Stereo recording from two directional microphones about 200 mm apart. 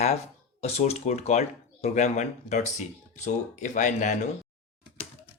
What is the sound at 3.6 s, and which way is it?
Speech, 40° left (ahead or behind).